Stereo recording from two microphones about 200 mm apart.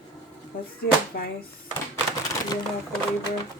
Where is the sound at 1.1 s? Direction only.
50° left (ahead or behind).